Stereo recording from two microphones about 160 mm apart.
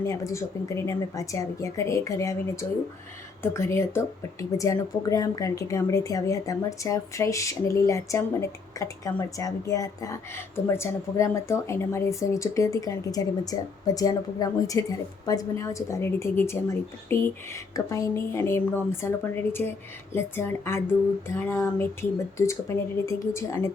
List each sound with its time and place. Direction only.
0.0 s speech: 20° left (ahead or behind)